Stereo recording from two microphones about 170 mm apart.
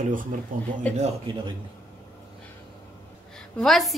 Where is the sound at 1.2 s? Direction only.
30° right (ahead or behind).